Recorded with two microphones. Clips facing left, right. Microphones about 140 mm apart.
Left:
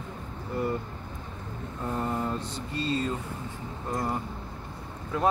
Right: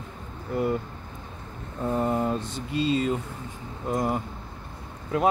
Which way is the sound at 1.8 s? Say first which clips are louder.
Right 5 dB; 15° right (ahead or behind).